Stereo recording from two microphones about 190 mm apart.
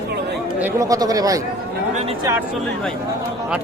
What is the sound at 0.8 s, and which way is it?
Speech, 20° right (ahead or behind).